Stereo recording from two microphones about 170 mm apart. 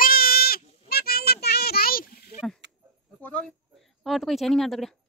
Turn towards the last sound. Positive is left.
turn(degrees=0)  # may be behind; listen again after turning